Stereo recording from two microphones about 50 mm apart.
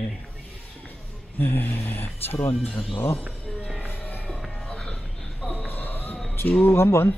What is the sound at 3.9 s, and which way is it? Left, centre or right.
Music, left.